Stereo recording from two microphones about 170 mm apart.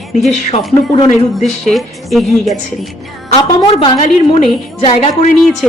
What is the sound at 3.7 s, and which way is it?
Speech, 35° left (ahead or behind).